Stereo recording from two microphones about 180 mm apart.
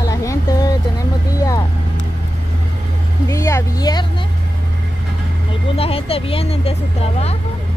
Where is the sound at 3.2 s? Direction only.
15° left (ahead or behind).